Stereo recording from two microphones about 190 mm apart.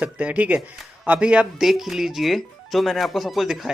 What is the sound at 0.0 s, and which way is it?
Speech, 5° right (ahead or behind).